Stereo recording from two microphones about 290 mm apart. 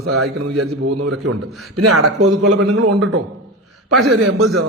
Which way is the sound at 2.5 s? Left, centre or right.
Right.